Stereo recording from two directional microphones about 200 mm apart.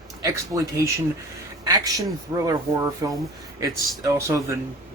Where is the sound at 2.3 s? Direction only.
15° right (ahead or behind).